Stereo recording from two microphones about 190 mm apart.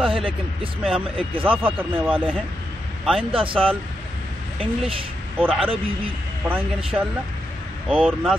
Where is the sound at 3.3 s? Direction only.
30° right (ahead or behind).